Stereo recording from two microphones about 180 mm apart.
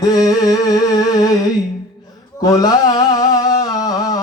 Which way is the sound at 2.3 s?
20° left (ahead or behind).